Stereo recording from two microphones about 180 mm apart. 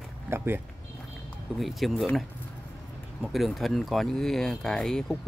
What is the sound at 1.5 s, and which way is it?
Speech, centre (ahead or behind).